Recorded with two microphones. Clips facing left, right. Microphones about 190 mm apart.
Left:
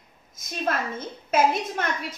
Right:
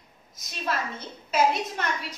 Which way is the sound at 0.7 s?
50° left (ahead or behind).